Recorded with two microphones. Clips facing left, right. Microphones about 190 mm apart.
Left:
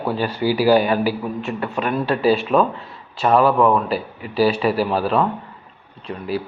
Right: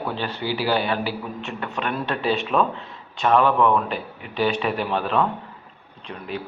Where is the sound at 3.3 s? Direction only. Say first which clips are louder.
Left 3 dB; 35° left (ahead or behind).